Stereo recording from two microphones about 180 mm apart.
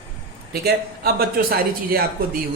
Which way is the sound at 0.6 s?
60° right (ahead or behind).